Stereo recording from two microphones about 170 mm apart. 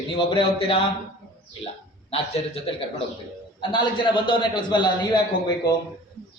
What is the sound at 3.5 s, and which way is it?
A man's voice, 30° left (ahead or behind).